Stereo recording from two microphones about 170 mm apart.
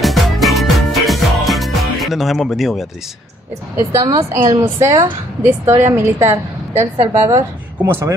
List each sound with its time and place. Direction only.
0.0 s music: centre (ahead or behind)
3.7 s a woman's voice: 20° right (ahead or behind)